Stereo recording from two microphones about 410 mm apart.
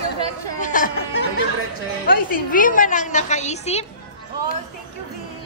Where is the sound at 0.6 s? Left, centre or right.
Centre.